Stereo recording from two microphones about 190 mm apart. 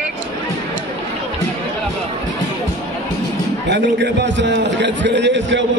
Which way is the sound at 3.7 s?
70° right (ahead or behind).